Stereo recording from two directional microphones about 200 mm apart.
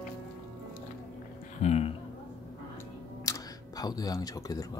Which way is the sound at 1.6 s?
35° left (ahead or behind).